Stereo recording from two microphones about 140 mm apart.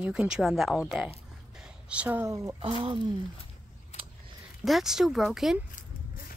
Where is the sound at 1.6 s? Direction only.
10° right (ahead or behind).